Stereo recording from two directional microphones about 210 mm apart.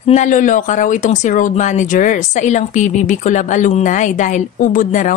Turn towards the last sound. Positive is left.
turn(degrees=40)  # may be behind; listen again after turning